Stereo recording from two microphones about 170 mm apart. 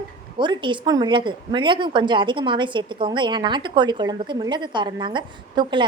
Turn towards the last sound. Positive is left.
turn(degrees=-25)  # may be behind; listen again after turning